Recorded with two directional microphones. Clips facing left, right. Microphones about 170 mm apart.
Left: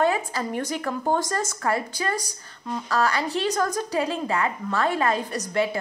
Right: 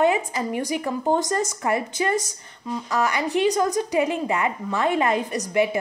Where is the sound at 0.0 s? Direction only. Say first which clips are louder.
Right 2 dB; 20° right (ahead or behind).